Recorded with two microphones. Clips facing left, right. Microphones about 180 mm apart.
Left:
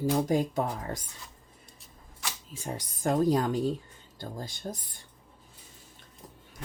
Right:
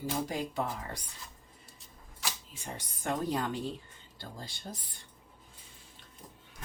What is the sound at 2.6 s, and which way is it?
Speech, 40° left (ahead or behind).